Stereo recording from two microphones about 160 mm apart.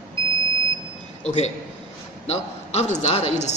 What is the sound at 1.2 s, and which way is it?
A man's voice, 45° left (ahead or behind).